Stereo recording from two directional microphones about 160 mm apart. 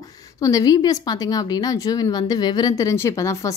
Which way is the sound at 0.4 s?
20° left (ahead or behind).